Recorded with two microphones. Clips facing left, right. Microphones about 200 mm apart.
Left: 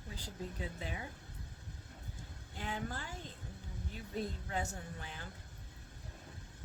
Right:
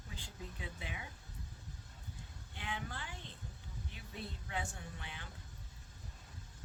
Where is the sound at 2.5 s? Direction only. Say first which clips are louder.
Left 4 dB; 40° left (ahead or behind).